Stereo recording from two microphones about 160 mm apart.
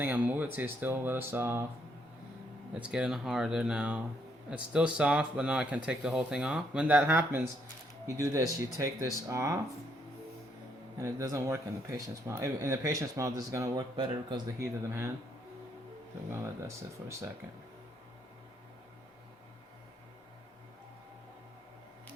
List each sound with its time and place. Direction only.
0.0 s speech: 10° right (ahead or behind)
2.7 s speech: 5° right (ahead or behind)
10.9 s speech: 20° right (ahead or behind)
16.3 s speech: 15° right (ahead or behind)